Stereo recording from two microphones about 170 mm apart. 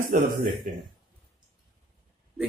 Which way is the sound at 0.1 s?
50° right (ahead or behind).